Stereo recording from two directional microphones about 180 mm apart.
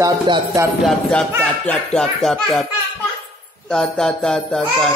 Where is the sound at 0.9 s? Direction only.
5° left (ahead or behind).